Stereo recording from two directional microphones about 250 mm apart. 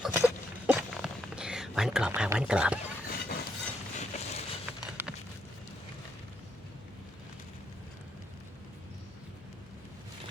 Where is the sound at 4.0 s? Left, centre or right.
Left.